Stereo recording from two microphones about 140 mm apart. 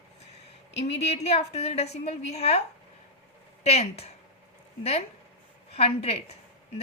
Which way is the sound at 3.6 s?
50° left (ahead or behind).